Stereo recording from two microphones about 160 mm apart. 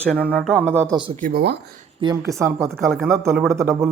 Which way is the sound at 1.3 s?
80° right.